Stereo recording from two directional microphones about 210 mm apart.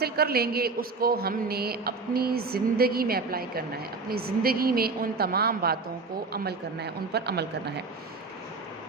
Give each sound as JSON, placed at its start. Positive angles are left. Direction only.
{"t": 0.0, "sound": "a woman's voice", "side_deg": -45}